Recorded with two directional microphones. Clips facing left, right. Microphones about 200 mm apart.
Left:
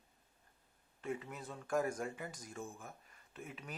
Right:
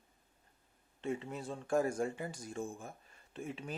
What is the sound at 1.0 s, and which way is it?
Speech, 25° right (ahead or behind).